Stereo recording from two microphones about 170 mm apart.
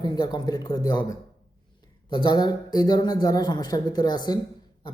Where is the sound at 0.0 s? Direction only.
25° left (ahead or behind).